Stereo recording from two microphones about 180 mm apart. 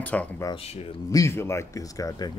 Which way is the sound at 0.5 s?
35° left (ahead or behind).